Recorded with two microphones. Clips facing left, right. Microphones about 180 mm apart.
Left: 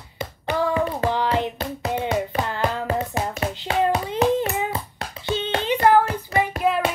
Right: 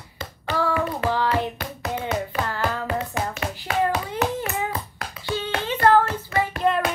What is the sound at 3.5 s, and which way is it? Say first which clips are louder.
Hands: left 2 dB; 20° left (ahead or behind).